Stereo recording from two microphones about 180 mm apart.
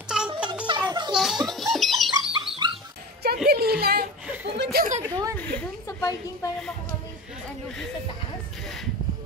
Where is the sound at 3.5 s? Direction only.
60° right (ahead or behind).